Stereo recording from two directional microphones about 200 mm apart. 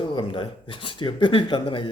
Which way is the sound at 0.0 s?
25° left (ahead or behind).